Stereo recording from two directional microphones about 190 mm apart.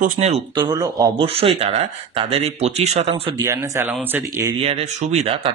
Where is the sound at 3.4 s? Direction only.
15° right (ahead or behind).